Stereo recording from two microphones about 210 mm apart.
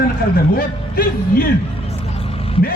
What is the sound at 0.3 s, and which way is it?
Speech, 45° left (ahead or behind).